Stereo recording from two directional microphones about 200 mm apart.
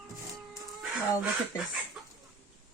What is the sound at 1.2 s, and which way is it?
Speech, 5° right (ahead or behind).